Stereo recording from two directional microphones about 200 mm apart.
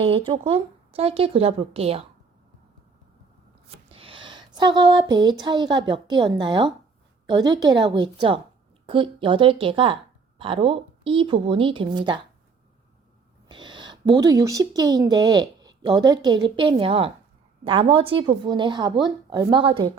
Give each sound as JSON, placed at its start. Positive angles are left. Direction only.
{"t": 0.0, "sound": "a woman's voice", "side_deg": -25}
{"t": 3.8, "sound": "a woman's voice", "side_deg": -25}
{"t": 13.5, "sound": "a sound", "side_deg": -25}
{"t": 14.0, "sound": "a woman's voice", "side_deg": -20}